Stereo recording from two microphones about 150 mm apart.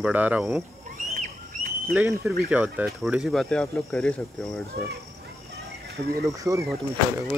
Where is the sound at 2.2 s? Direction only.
10° right (ahead or behind).